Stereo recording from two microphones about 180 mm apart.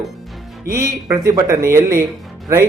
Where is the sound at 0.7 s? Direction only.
50° right (ahead or behind).